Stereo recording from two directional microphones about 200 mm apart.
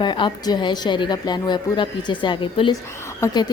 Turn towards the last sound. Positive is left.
turn(degrees=20)  # may be behind; listen again after turning